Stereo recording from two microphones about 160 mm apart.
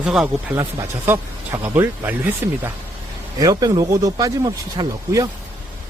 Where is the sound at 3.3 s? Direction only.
25° right (ahead or behind).